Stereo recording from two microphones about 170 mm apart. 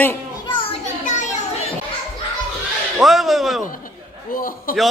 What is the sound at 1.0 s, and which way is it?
Children playing, 45° left (ahead or behind).